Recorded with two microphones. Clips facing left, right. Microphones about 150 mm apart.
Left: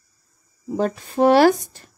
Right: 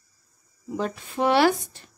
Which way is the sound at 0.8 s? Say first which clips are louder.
Left 7 dB; 40° left (ahead or behind).